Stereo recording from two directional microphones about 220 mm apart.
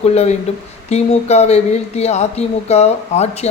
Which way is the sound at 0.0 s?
30° left (ahead or behind).